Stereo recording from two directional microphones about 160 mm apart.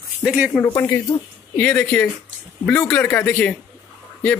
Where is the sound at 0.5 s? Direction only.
10° left (ahead or behind).